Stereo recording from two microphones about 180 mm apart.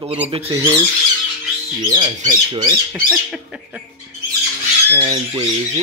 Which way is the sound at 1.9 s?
25° right (ahead or behind).